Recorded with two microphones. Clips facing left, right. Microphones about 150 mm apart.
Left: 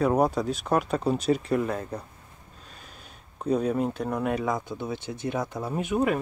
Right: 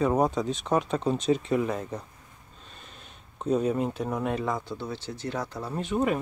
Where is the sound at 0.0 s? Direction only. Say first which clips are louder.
Left 1 dB; 5° left (ahead or behind).